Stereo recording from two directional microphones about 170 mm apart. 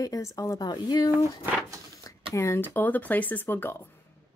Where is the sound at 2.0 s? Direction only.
20° left (ahead or behind).